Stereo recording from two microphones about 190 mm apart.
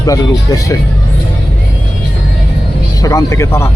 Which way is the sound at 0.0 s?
20° left (ahead or behind).